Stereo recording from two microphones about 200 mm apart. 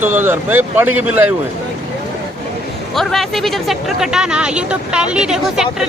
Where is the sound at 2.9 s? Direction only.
Centre (ahead or behind).